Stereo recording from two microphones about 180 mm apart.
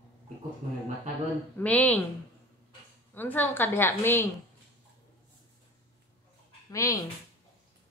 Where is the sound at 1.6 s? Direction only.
10° left (ahead or behind).